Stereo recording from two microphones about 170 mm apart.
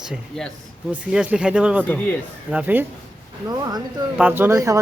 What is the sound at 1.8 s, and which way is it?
Speech, 10° left (ahead or behind).